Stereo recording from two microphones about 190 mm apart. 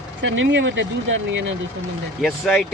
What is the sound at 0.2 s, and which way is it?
Speech, 75° right (ahead or behind).